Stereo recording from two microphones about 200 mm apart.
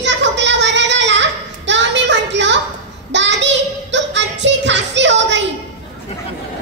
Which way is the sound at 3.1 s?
65° right (ahead or behind).